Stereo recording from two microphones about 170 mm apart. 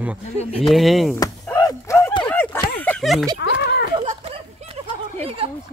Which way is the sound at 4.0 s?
40° right (ahead or behind).